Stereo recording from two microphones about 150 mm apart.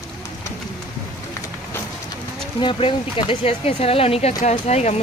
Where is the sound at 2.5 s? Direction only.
35° left (ahead or behind).